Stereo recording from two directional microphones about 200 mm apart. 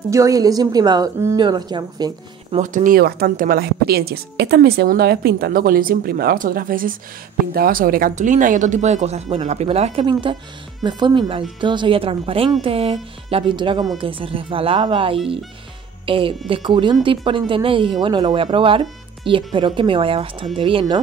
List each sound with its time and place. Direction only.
0.1 s a woman's voice: 15° right (ahead or behind)
2.6 s a woman's voice: 40° right (ahead or behind); by 21.0 s 25° right (ahead or behind)